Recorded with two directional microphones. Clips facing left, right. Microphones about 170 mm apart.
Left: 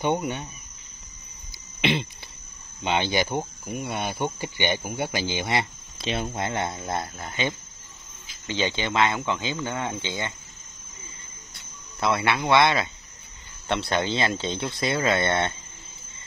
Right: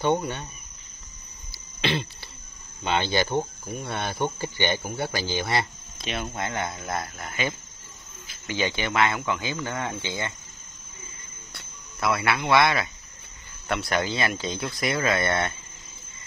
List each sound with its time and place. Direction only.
1.5 s throat clearing: 20° left (ahead or behind)
2.8 s speech: 20° left (ahead or behind)
12.0 s speech: 25° left (ahead or behind)